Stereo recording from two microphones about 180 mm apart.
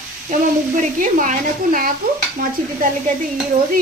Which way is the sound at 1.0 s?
45° right (ahead or behind).